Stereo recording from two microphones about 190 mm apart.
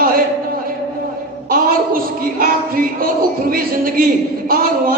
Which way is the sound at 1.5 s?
50° right (ahead or behind).